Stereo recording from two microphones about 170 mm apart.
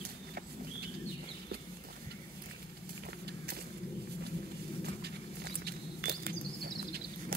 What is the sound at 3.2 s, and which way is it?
Walk, 70° right (ahead or behind).